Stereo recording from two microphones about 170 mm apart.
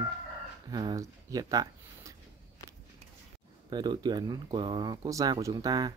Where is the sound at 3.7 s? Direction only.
25° right (ahead or behind).